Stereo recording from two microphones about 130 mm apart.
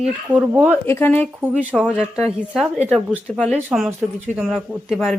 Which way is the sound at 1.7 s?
10° left (ahead or behind).